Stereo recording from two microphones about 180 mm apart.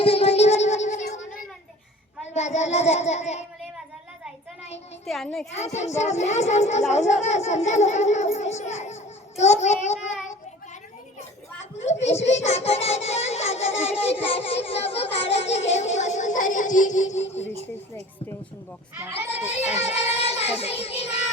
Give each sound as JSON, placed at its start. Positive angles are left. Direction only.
{"t": 0.0, "sound": "a sound", "side_deg": 35}
{"t": 2.2, "sound": "a child's voice", "side_deg": 40}
{"t": 5.0, "sound": "a child's voice", "side_deg": 0}
{"t": 5.5, "sound": "a child's voice", "side_deg": 40}
{"t": 11.7, "sound": "a child's voice", "side_deg": 40}
{"t": 19.3, "sound": "a child's voice", "side_deg": 40}
{"t": 19.9, "sound": "child singing", "side_deg": 35}